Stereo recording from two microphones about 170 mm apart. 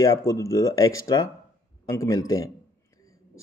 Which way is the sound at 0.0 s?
20° left (ahead or behind).